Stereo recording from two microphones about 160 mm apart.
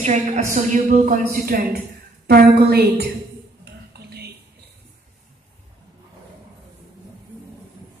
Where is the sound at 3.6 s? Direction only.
90° right.